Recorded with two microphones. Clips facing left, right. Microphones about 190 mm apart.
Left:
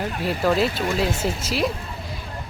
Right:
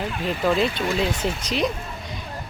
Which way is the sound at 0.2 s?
5° left (ahead or behind).